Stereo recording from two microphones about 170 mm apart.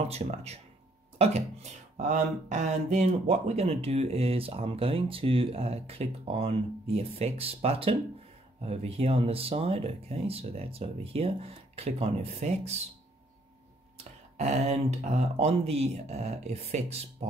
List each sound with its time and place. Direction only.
0.1 s speech: 35° right (ahead or behind)
13.9 s speech: 40° right (ahead or behind)